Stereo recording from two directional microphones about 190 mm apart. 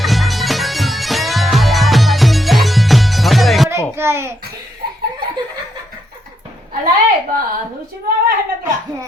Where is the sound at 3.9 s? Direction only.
15° right (ahead or behind).